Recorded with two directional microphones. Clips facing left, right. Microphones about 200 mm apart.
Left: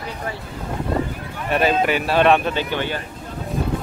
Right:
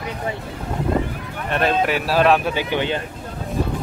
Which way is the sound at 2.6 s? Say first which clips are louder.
Right 2 dB; 15° right (ahead or behind).